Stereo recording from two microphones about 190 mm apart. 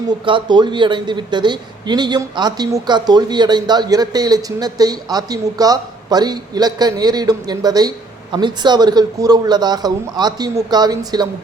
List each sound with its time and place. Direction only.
0.3 s a man's voice: 25° right (ahead or behind)